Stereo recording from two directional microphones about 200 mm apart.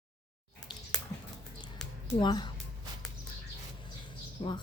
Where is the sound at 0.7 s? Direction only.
20° left (ahead or behind).